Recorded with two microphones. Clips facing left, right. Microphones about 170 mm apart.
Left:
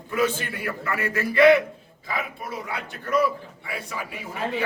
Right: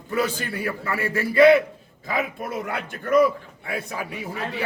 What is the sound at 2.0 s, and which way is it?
A man's voice, 50° right (ahead or behind).